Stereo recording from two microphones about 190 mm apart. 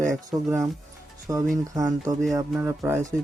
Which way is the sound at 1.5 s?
15° right (ahead or behind).